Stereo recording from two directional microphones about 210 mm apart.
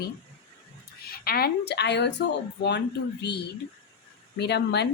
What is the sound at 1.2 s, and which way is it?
A woman's voice, 45° left (ahead or behind).